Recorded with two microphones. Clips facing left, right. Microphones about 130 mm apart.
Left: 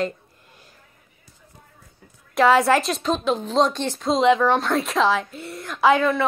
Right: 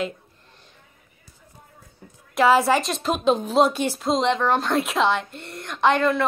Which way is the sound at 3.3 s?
15° right (ahead or behind).